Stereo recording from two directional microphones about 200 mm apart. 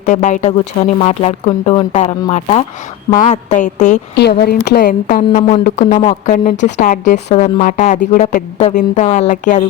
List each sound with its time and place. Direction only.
0.0 s a woman's voice: 35° left (ahead or behind)
4.1 s a woman's voice: 55° left (ahead or behind)
5.3 s a woman's voice: 25° left (ahead or behind)